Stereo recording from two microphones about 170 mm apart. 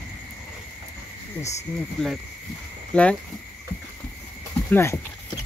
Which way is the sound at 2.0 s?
5° left (ahead or behind).